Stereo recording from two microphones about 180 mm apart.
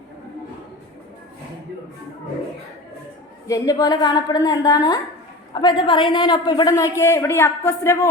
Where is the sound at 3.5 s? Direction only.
20° left (ahead or behind).